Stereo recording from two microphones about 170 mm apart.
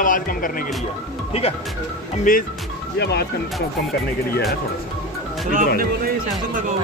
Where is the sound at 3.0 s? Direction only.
75° left (ahead or behind).